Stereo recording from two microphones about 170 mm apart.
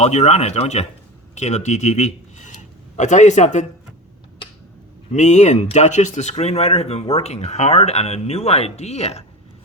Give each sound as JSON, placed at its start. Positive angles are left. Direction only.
{"t": 0.0, "sound": "a man's voice", "side_deg": 40}
{"t": 5.1, "sound": "speech", "side_deg": 45}